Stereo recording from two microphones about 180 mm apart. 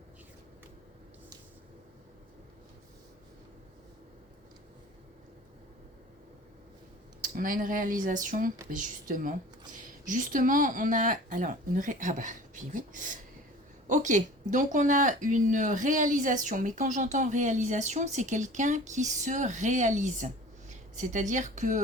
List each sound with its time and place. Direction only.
7.2 s speech: 50° right (ahead or behind)